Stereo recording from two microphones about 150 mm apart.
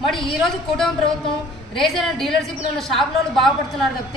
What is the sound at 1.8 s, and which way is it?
A woman's voice, centre (ahead or behind).